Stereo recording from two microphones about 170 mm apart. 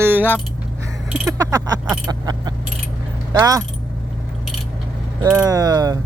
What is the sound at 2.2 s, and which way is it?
Keys jangling, 25° right (ahead or behind).